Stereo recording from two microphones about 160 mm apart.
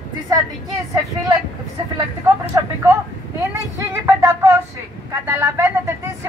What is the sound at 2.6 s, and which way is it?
Speech, 20° right (ahead or behind).